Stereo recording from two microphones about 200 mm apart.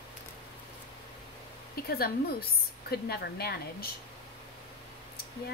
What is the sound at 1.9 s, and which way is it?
A woman's voice, 50° left (ahead or behind).